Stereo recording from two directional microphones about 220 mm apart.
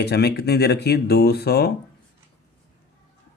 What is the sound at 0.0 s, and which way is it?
Speech, 50° left (ahead or behind).